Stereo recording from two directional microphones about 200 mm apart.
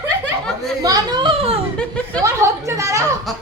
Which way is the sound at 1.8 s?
5° left (ahead or behind).